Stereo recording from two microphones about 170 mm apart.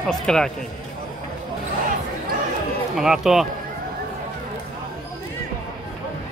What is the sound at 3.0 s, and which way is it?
Speech, centre (ahead or behind).